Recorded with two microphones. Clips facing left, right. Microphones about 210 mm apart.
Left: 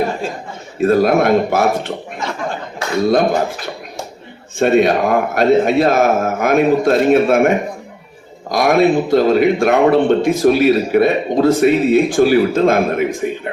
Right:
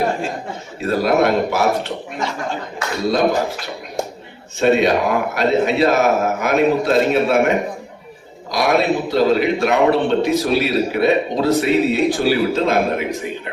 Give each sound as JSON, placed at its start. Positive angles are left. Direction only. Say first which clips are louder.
{"t": 0.8, "sound": "a man's voice", "louder": "left 4 dB", "side_deg": 50}
{"t": 4.6, "sound": "a man's voice", "louder": "left 2 dB", "side_deg": 50}